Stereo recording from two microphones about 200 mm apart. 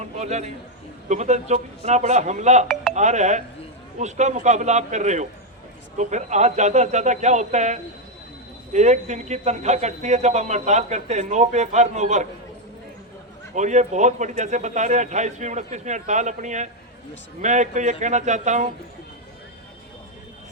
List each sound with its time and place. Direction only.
0.0 s a sound: 35° right (ahead or behind)
1.0 s speech: 35° right (ahead or behind)
13.6 s speech: 35° right (ahead or behind)